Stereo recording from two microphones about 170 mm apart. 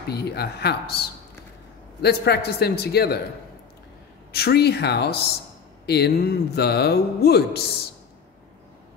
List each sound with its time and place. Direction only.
0.1 s speech: 75° left (ahead or behind)
4.3 s speech: 70° left (ahead or behind)